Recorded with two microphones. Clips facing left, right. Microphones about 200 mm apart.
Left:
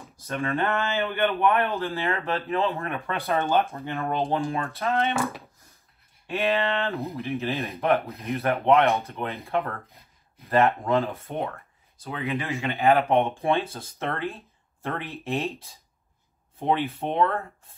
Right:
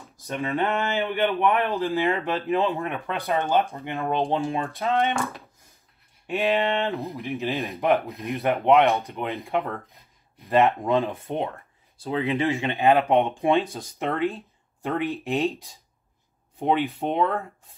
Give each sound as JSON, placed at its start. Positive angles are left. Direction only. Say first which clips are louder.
{"t": 0.3, "sound": "speech", "louder": "right 1 dB", "side_deg": -15}
{"t": 5.1, "sound": "speech", "louder": "left 1 dB", "side_deg": 0}
{"t": 6.2, "sound": "speech", "louder": "right 2 dB", "side_deg": -15}
{"t": 6.9, "sound": "speech", "louder": "right 1 dB", "side_deg": 0}
{"t": 7.2, "sound": "speech", "louder": "right 1 dB", "side_deg": -15}
{"t": 12.0, "sound": "speech", "louder": "right 5 dB", "side_deg": -30}
{"t": 12.5, "sound": "speech", "louder": "left 2 dB", "side_deg": -15}